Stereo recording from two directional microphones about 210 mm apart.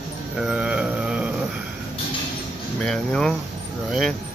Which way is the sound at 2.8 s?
5° left (ahead or behind).